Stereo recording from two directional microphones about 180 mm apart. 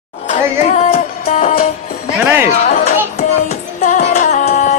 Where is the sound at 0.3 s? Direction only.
35° left (ahead or behind).